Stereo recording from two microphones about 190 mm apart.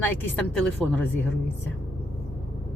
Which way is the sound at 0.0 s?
10° left (ahead or behind).